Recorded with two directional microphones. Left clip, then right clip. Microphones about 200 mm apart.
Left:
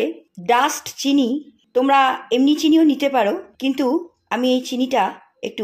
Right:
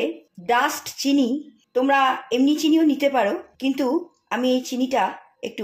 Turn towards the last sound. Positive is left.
turn(degrees=25)  # may be behind; listen again after turning